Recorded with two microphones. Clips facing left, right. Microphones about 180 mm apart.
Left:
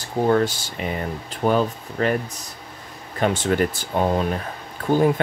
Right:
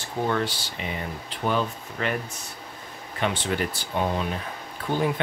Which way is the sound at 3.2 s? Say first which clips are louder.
Left 6 dB; 45° left (ahead or behind).